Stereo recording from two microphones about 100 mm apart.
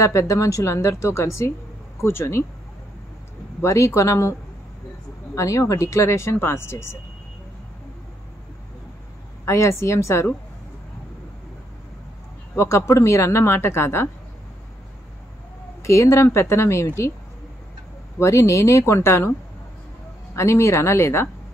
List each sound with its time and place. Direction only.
0.0 s speech: 30° left (ahead or behind)
3.6 s speech: 30° left (ahead or behind)
9.4 s speech: 30° left (ahead or behind)
12.5 s speech: 30° left (ahead or behind)
15.8 s speech: 30° left (ahead or behind)
18.2 s speech: 30° left (ahead or behind)
20.3 s speech: 25° left (ahead or behind)